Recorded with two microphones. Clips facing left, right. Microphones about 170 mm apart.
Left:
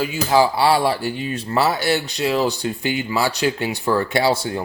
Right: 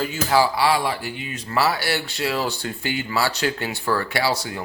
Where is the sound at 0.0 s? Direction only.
15° left (ahead or behind).